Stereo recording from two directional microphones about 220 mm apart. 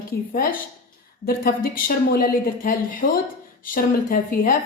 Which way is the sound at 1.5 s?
40° left (ahead or behind).